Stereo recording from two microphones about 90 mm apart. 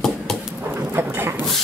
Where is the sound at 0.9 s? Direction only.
25° right (ahead or behind).